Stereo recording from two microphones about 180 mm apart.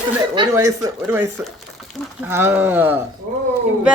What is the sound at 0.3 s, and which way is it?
Speech, 20° right (ahead or behind).